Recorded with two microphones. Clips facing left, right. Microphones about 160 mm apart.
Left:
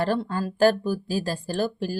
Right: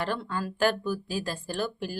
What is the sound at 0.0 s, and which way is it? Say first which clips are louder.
A woman's voice: left 6 dB; 35° left (ahead or behind).